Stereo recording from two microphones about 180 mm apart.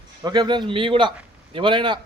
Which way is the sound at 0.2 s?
25° right (ahead or behind).